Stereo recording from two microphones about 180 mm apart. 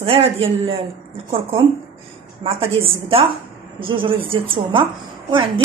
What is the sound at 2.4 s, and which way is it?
A woman's voice, 35° right (ahead or behind).